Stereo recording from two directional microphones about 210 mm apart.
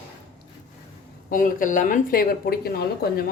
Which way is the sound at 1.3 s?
40° left (ahead or behind).